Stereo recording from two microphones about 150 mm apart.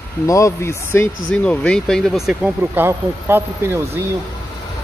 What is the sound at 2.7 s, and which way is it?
Speech, 15° right (ahead or behind).